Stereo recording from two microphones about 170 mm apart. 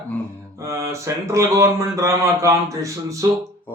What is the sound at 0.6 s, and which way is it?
A man's voice, 15° right (ahead or behind).